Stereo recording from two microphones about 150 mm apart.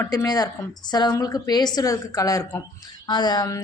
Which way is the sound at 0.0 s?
20° left (ahead or behind).